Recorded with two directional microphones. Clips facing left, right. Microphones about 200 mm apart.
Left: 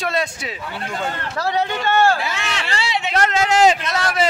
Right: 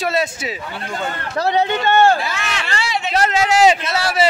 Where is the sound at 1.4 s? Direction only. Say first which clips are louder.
Right 4 dB; 20° right (ahead or behind).